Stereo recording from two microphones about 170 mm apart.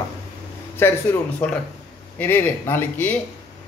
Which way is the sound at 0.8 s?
15° left (ahead or behind).